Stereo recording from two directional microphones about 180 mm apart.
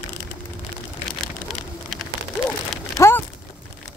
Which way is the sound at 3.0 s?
15° left (ahead or behind).